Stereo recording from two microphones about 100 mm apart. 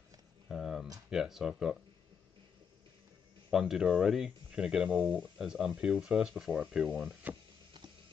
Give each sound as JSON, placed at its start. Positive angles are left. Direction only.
{"t": 0.5, "sound": "a sound", "side_deg": 0}
{"t": 1.1, "sound": "speech", "side_deg": -5}
{"t": 3.5, "sound": "speech", "side_deg": -5}